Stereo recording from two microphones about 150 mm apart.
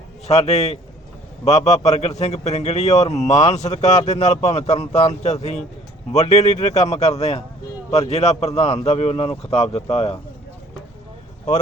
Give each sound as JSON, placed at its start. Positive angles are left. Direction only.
{"t": 0.3, "sound": "a man's voice", "side_deg": 45}